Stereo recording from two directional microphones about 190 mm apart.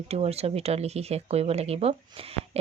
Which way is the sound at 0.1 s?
35° right (ahead or behind).